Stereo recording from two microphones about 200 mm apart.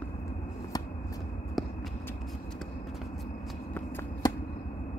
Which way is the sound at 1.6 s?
Centre (ahead or behind).